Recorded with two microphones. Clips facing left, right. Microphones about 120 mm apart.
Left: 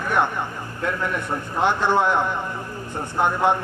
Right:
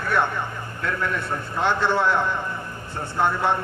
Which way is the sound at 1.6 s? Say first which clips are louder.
Left 2 dB; 15° left (ahead or behind).